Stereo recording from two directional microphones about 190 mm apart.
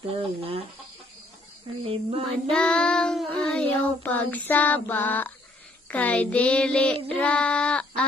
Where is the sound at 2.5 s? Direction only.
5° left (ahead or behind).